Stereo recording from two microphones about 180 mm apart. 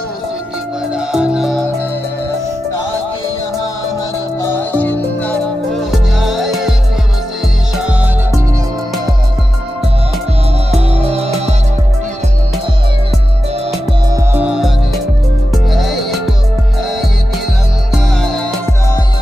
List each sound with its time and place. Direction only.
0.9 s music: 5° right (ahead or behind)
4.4 s music: 10° left (ahead or behind)
5.8 s music: centre (ahead or behind)
7.7 s music: 5° right (ahead or behind)
10.7 s music: 35° right (ahead or behind)
14.1 s music: 10° right (ahead or behind)
15.7 s music: centre (ahead or behind)
17.9 s music: centre (ahead or behind)